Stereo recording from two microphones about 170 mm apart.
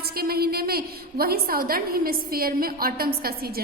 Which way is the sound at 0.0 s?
65° right (ahead or behind).